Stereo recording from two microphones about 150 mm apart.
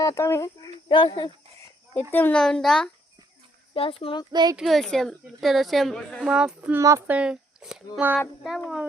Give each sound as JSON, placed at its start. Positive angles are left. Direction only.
{"t": 0.0, "sound": "speech", "side_deg": 20}
{"t": 0.9, "sound": "speech", "side_deg": 35}
{"t": 2.1, "sound": "a woman's voice", "side_deg": 10}
{"t": 3.8, "sound": "speech", "side_deg": 40}
{"t": 4.3, "sound": "speech", "side_deg": -25}
{"t": 4.5, "sound": "a woman's voice", "side_deg": 0}
{"t": 7.2, "sound": "speech", "side_deg": -5}